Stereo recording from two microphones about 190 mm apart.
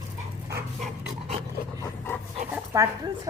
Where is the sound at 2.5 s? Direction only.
15° right (ahead or behind).